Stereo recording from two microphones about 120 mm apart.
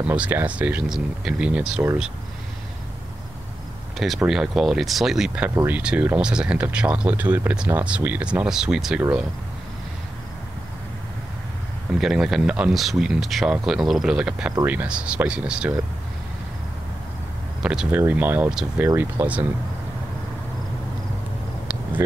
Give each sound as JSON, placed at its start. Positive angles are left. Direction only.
{"t": 0.0, "sound": "speech", "side_deg": -10}
{"t": 4.0, "sound": "speech", "side_deg": 0}
{"t": 5.5, "sound": "speech", "side_deg": -25}
{"t": 5.8, "sound": "speech", "side_deg": -10}
{"t": 12.0, "sound": "speech", "side_deg": -5}
{"t": 17.6, "sound": "speech", "side_deg": -5}
{"t": 17.9, "sound": "speech", "side_deg": -15}